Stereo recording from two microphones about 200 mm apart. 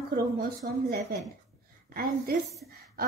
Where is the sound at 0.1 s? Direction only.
50° right (ahead or behind).